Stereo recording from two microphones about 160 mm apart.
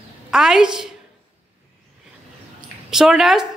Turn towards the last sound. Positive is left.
turn(degrees=-5)  # may be behind; listen again after turning